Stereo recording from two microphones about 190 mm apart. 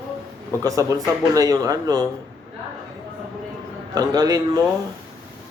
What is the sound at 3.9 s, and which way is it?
Speech, 20° right (ahead or behind).